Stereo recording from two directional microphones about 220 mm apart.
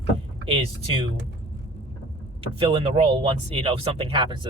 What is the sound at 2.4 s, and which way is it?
Speech, 25° right (ahead or behind).